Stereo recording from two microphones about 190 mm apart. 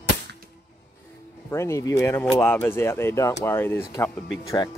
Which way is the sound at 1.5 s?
15° left (ahead or behind).